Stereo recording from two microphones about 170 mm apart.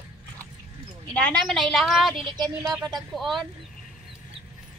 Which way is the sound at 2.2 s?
25° right (ahead or behind).